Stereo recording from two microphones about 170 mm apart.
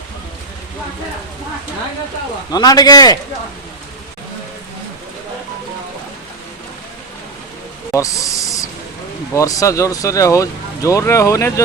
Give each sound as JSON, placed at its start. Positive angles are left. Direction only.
{"t": 2.5, "sound": "speech", "side_deg": 25}
{"t": 7.9, "sound": "speech", "side_deg": 20}